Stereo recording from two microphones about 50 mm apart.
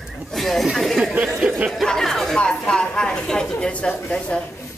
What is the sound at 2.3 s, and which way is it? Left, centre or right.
A woman's voice, centre.